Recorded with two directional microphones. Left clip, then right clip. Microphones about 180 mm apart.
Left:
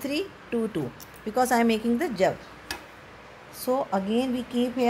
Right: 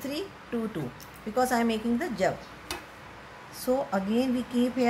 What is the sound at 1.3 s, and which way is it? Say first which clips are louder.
Speech: left 3 dB; 45° left (ahead or behind).